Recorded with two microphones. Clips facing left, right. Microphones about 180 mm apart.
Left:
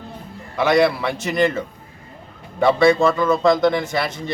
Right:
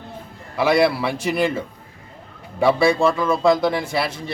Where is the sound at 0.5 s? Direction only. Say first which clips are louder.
Left 1 dB; 5° right (ahead or behind).